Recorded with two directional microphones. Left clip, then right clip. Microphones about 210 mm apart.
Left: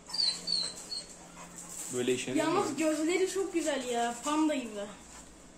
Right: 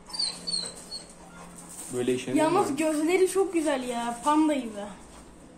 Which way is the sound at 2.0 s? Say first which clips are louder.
Right 3 dB; 5° left (ahead or behind).